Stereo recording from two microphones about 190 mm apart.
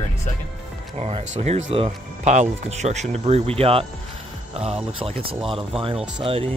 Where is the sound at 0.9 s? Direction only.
35° right (ahead or behind).